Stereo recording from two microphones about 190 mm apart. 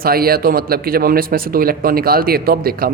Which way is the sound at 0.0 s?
50° right (ahead or behind).